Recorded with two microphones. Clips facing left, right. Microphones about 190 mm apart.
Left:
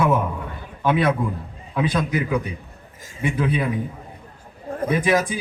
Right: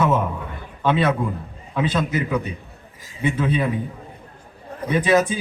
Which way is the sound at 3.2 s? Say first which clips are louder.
Right 1 dB; 25° right (ahead or behind).